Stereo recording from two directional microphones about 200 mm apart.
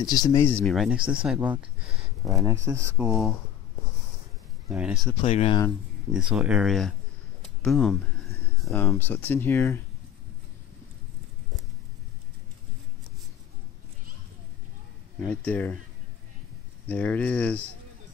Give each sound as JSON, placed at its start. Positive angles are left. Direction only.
{"t": 0.0, "sound": "speech", "side_deg": 20}
{"t": 0.7, "sound": "speech", "side_deg": 0}
{"t": 3.0, "sound": "speech", "side_deg": 0}
{"t": 4.6, "sound": "speech", "side_deg": -5}
{"t": 5.2, "sound": "speech", "side_deg": 30}
{"t": 6.1, "sound": "speech", "side_deg": -5}
{"t": 15.2, "sound": "speech", "side_deg": 5}
{"t": 16.8, "sound": "speech", "side_deg": 10}